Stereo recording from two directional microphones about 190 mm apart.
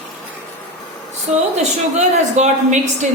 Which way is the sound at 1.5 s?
35° right (ahead or behind).